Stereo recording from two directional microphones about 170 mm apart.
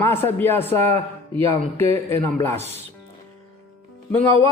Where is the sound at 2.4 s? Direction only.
15° left (ahead or behind).